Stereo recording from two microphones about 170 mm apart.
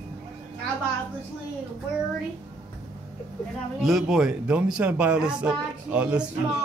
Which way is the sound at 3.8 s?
Centre (ahead or behind).